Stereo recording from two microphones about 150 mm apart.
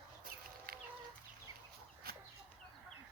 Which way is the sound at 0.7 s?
85° right.